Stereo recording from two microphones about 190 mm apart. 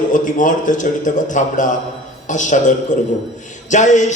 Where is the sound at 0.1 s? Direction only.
45° left (ahead or behind).